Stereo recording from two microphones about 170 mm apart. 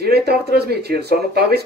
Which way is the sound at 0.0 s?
70° right (ahead or behind).